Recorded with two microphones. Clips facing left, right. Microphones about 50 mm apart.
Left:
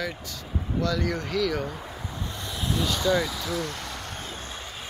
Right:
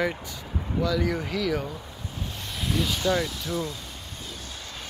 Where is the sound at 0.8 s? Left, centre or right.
Centre.